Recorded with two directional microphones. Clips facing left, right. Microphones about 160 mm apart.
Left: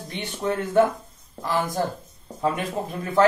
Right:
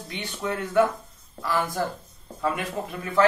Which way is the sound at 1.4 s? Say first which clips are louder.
Left 2 dB; 20° left (ahead or behind).